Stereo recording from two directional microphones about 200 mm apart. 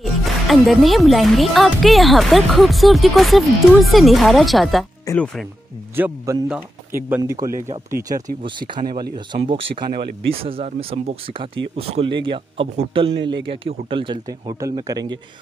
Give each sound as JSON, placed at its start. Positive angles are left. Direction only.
{"t": 0.0, "sound": "speech", "side_deg": 0}
{"t": 5.9, "sound": "speech", "side_deg": -15}